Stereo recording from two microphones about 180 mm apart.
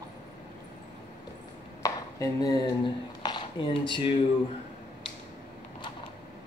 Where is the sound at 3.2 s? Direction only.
25° left (ahead or behind).